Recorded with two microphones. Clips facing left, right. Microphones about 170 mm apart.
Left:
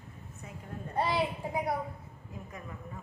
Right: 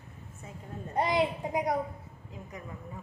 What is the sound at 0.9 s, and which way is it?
Speech, 15° right (ahead or behind).